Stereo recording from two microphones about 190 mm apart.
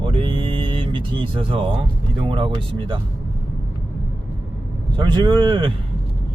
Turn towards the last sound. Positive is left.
turn(degrees=-25)  # may be behind; listen again after turning